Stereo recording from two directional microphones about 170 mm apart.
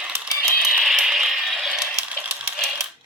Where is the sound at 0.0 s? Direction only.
10° right (ahead or behind).